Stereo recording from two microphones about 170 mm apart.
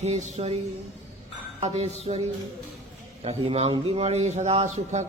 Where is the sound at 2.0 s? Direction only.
40° right (ahead or behind).